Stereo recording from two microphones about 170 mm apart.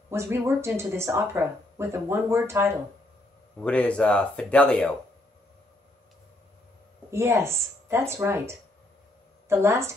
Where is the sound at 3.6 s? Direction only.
5° left (ahead or behind).